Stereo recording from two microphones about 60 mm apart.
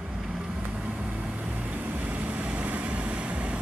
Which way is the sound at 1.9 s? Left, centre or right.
Right.